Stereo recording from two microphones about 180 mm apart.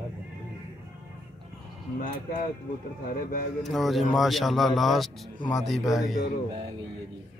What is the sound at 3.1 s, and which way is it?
Speech, 50° left (ahead or behind).